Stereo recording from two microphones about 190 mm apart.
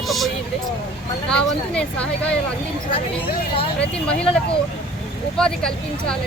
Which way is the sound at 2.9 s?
25° left (ahead or behind).